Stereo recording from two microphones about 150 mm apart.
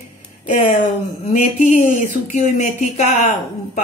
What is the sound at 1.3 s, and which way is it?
Speech, 55° left (ahead or behind).